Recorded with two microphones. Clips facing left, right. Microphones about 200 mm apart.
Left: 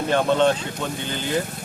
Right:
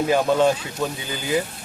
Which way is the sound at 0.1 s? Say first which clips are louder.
Left 1 dB; 5° right (ahead or behind).